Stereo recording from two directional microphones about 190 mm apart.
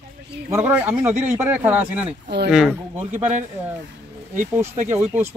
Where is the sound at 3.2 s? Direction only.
40° right (ahead or behind).